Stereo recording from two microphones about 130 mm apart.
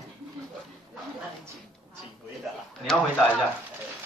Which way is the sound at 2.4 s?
Centre (ahead or behind).